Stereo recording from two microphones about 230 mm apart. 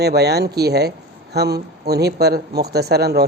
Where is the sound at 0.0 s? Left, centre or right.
Right.